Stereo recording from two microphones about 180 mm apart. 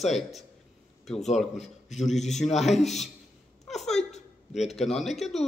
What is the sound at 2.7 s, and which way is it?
Speech, 40° left (ahead or behind).